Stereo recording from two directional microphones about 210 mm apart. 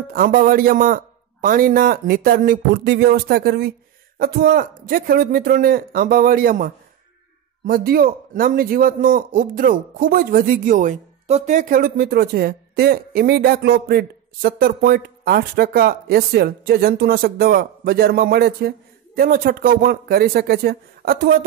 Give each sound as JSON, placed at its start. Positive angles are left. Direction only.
{"t": 0.1, "sound": "a man's voice", "side_deg": -40}